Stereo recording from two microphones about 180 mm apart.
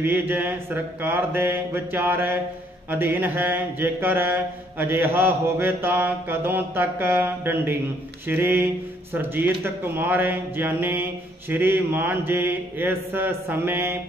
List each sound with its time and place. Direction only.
0.0 s mantra: 10° right (ahead or behind)